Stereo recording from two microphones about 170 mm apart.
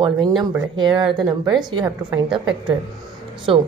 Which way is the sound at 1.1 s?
5° right (ahead or behind).